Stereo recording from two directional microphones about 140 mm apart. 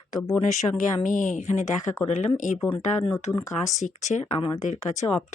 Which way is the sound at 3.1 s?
20° left (ahead or behind).